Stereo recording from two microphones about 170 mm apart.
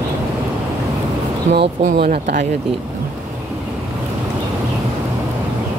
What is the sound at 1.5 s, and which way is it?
Speech, 45° right (ahead or behind).